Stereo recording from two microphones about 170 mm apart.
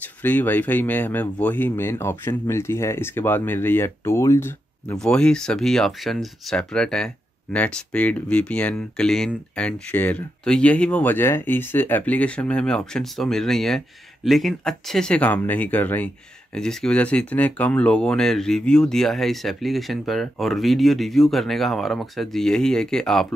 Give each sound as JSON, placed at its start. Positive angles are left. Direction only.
{"t": 0.0, "sound": "speech", "side_deg": 10}
{"t": 4.9, "sound": "speech", "side_deg": 5}